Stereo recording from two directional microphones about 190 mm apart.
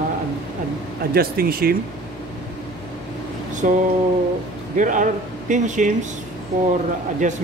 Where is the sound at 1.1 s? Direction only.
50° right (ahead or behind).